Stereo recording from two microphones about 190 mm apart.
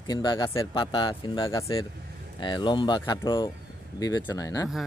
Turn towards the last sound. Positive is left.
turn(degrees=15)  # may be behind; listen again after turning